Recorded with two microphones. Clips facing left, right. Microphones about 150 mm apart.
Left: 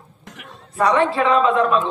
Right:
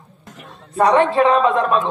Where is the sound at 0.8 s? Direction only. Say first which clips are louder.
Right 3 dB; 35° right (ahead or behind).